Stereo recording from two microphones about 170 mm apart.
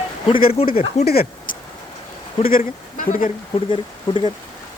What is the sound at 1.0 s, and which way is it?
Speech, 65° left (ahead or behind).